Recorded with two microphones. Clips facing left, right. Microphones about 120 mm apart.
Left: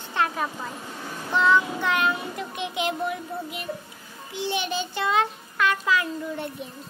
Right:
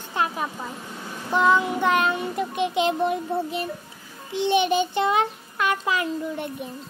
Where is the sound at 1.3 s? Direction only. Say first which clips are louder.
Right 2 dB; 15° right (ahead or behind).